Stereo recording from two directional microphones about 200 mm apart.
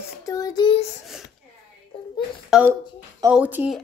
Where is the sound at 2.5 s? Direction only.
Centre (ahead or behind).